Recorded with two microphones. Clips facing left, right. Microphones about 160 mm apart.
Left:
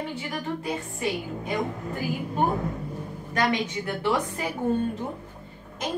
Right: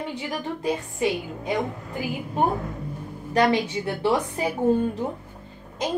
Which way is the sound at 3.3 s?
30° right (ahead or behind).